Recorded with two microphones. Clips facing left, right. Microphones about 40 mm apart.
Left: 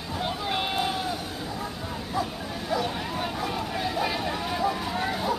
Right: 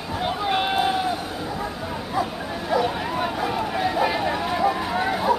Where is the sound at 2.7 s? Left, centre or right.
Centre.